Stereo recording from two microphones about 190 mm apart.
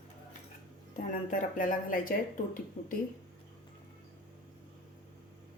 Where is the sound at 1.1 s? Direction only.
45° left (ahead or behind).